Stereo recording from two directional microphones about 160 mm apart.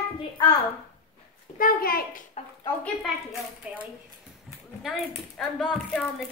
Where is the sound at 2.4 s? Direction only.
45° left (ahead or behind).